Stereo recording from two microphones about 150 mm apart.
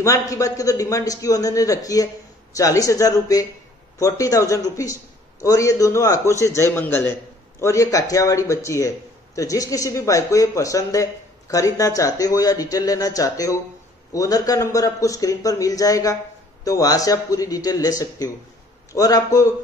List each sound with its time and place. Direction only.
0.0 s speech: 20° left (ahead or behind)